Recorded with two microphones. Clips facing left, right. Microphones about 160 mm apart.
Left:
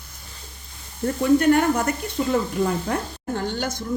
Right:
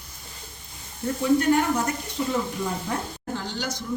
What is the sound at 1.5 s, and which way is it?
Speech, 55° left (ahead or behind).